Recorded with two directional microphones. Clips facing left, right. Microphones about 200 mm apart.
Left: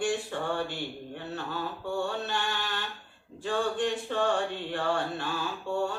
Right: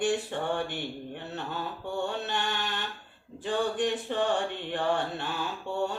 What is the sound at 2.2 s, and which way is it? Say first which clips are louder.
Mantra: right 1 dB; 20° right (ahead or behind).